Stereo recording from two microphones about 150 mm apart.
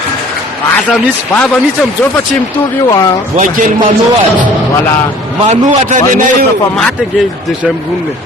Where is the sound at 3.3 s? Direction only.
60° right (ahead or behind).